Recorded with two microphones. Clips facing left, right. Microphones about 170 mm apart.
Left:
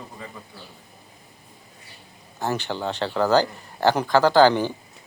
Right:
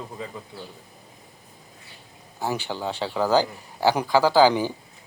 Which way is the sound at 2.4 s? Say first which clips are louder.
Left 1 dB; 10° right (ahead or behind).